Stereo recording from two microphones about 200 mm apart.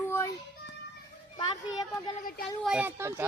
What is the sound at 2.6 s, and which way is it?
Speech, 5° right (ahead or behind).